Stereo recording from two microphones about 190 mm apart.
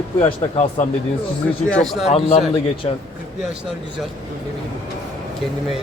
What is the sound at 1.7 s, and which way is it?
Speech, centre (ahead or behind).